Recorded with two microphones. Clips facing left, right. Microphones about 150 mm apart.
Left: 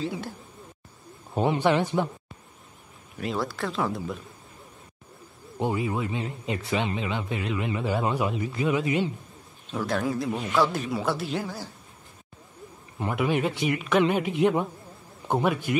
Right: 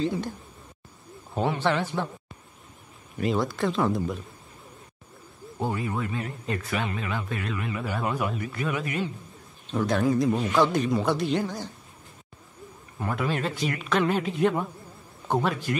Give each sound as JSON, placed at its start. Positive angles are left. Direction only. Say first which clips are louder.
{"t": 0.0, "sound": "a man's voice", "louder": "right 4 dB", "side_deg": 5}
{"t": 1.3, "sound": "a man's voice", "louder": "left 3 dB", "side_deg": 15}
{"t": 3.2, "sound": "a man's voice", "louder": "right 4 dB", "side_deg": 0}
{"t": 5.6, "sound": "speech", "louder": "left 2 dB", "side_deg": 15}
{"t": 9.7, "sound": "a man's voice", "louder": "right 3 dB", "side_deg": 5}
{"t": 13.0, "sound": "a man's voice", "louder": "left 3 dB", "side_deg": 15}